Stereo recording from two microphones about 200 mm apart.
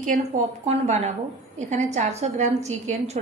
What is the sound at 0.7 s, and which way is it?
A woman's voice, 35° right (ahead or behind).